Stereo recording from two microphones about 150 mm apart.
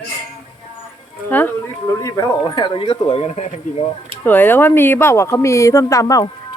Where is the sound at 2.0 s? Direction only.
25° left (ahead or behind); by 3.8 s 40° left (ahead or behind).